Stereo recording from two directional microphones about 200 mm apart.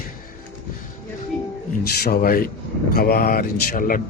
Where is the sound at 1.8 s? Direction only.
50° left (ahead or behind).